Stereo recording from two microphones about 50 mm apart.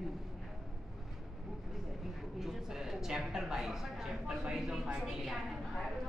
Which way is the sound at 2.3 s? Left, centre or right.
Centre.